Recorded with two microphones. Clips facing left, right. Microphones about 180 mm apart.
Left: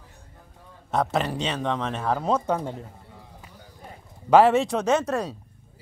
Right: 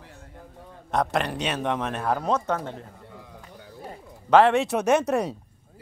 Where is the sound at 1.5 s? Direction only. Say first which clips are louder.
Even; 15° right (ahead or behind).